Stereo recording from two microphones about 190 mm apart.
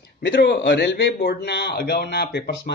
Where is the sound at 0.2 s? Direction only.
65° left (ahead or behind).